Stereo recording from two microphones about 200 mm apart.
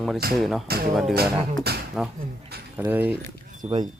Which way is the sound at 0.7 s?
50° right (ahead or behind).